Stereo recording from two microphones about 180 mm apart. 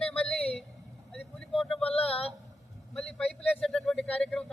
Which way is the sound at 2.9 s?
5° left (ahead or behind).